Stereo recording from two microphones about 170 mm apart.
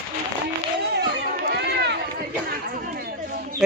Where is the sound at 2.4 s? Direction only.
65° right (ahead or behind).